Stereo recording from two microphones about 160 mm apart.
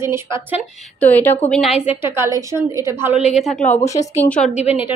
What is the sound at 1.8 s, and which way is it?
A woman's voice, 15° right (ahead or behind).